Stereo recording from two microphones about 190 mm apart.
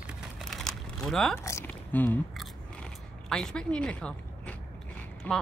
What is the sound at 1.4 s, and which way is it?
Speech, 10° left (ahead or behind).